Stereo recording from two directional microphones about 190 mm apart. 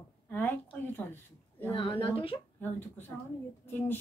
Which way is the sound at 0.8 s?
10° left (ahead or behind).